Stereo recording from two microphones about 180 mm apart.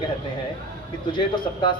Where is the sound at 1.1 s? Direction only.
25° left (ahead or behind).